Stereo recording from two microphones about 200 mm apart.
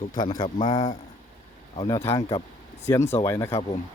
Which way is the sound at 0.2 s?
20° left (ahead or behind).